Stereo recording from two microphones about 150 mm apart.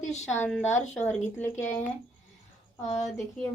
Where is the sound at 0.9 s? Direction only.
10° left (ahead or behind).